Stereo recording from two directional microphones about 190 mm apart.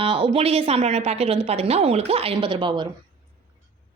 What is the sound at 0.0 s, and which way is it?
A woman's voice, 30° right (ahead or behind).